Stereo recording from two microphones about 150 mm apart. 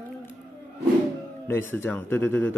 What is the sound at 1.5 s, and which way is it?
Speech, 15° left (ahead or behind).